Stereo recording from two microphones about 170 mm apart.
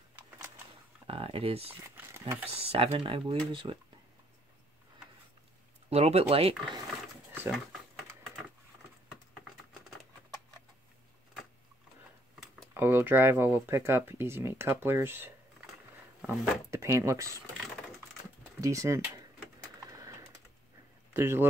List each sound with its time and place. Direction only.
1.0 s speech: 35° right (ahead or behind)
1.8 s crumpling: 15° right (ahead or behind)
2.6 s speech: 35° right (ahead or behind)
5.9 s speech: 40° right (ahead or behind)
12.7 s speech: 10° right (ahead or behind)
18.6 s speech: 20° right (ahead or behind)
19.8 s a sound: 20° right (ahead or behind)
21.1 s speech: 15° right (ahead or behind)